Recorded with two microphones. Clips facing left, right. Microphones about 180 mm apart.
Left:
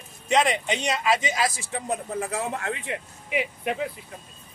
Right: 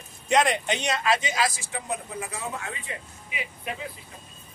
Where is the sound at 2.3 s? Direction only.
70° left (ahead or behind).